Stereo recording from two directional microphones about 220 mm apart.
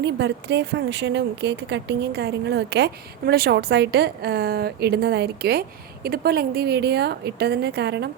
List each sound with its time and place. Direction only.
0.0 s speech: 50° right (ahead or behind)